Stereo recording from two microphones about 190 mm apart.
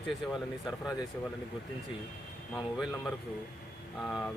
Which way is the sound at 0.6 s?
20° left (ahead or behind).